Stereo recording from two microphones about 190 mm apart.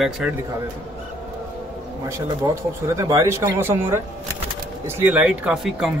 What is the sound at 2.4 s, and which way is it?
Speech, 20° right (ahead or behind).